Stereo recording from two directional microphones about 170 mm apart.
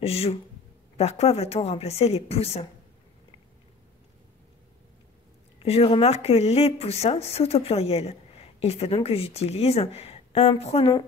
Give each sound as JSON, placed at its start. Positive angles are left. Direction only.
{"t": 0.0, "sound": "speech", "side_deg": 35}
{"t": 5.6, "sound": "speech", "side_deg": 35}